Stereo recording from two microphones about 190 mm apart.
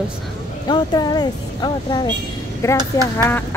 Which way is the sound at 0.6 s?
20° left (ahead or behind).